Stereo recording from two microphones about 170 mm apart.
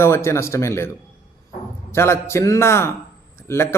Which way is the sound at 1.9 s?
15° left (ahead or behind).